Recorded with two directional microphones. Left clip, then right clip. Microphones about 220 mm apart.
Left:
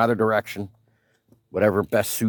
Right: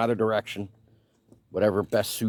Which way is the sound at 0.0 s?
30° left (ahead or behind).